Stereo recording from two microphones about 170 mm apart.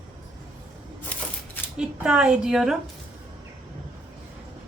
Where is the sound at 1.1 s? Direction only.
10° left (ahead or behind).